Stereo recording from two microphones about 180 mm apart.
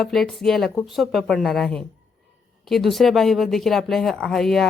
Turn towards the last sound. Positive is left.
turn(degrees=0)  # may be behind; listen again after turning